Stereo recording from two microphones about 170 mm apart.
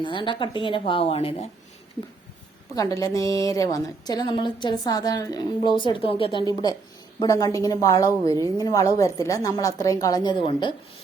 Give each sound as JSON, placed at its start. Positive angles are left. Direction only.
{"t": 0.0, "sound": "a woman's voice", "side_deg": 30}
{"t": 2.7, "sound": "a woman's voice", "side_deg": 20}